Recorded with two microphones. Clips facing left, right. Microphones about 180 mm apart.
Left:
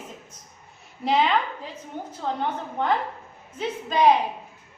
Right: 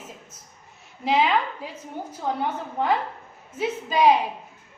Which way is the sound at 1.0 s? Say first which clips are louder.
Even; 5° right (ahead or behind).